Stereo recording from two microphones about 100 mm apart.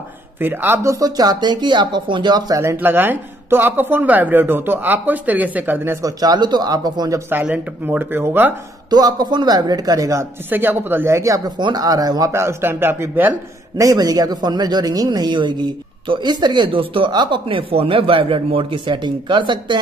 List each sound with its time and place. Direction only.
0.4 s speech: 20° right (ahead or behind)
0.9 s speech: 40° right (ahead or behind)
2.6 s speech: 25° right (ahead or behind)
6.0 s a man's voice: 45° right (ahead or behind)
7.4 s speech: 15° right (ahead or behind)
8.9 s a man's voice: 45° right (ahead or behind)
10.5 s speech: 20° right (ahead or behind)
11.5 s a man's voice: 45° right (ahead or behind)
12.3 s speech: 25° right (ahead or behind)
13.7 s speech: 40° right (ahead or behind)